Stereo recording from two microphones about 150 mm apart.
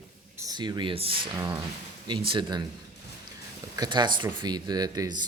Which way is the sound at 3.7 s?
30° right (ahead or behind).